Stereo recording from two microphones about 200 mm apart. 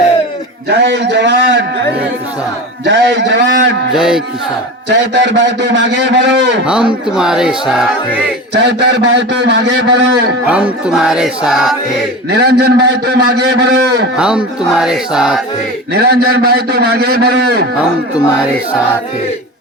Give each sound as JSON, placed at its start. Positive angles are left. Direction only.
{"t": 0.7, "sound": "a man's voice", "side_deg": -60}
{"t": 2.8, "sound": "a man's voice", "side_deg": -60}
{"t": 3.9, "sound": "music", "side_deg": -5}
{"t": 4.9, "sound": "a man's voice", "side_deg": -60}
{"t": 7.2, "sound": "music", "side_deg": -5}
{"t": 8.5, "sound": "a man's voice", "side_deg": -60}
{"t": 10.5, "sound": "music", "side_deg": -5}
{"t": 12.3, "sound": "a man's voice", "side_deg": -55}
{"t": 14.2, "sound": "music", "side_deg": -5}
{"t": 15.9, "sound": "a man's voice", "side_deg": -55}